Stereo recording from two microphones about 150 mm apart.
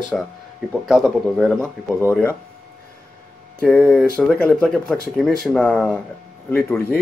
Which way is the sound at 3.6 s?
5° left (ahead or behind).